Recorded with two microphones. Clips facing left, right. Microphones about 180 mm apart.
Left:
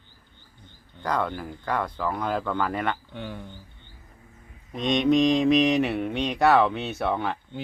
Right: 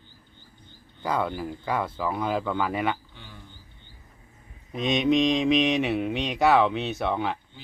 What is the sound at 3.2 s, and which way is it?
Speech, 60° left (ahead or behind).